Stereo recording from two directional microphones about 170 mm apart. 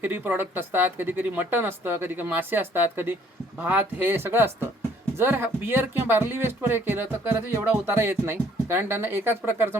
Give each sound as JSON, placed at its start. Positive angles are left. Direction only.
{"t": 0.0, "sound": "speech", "side_deg": -10}